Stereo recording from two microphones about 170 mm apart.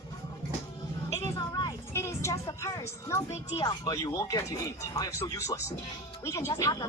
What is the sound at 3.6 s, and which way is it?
Speech, 25° left (ahead or behind).